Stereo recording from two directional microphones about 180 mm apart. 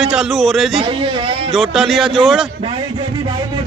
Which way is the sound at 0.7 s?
30° right (ahead or behind).